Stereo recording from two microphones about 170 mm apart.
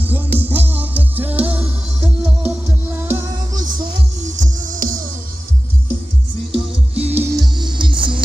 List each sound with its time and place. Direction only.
0.0 s music: 10° right (ahead or behind)
4.2 s music: 50° right (ahead or behind)
6.5 s music: 35° right (ahead or behind)
7.1 s music: 10° right (ahead or behind)
7.5 s music: 25° right (ahead or behind)